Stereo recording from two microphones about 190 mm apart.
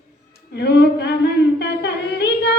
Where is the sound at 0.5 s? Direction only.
60° left (ahead or behind).